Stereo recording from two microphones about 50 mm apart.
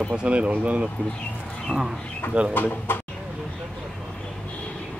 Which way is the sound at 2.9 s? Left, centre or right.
Left.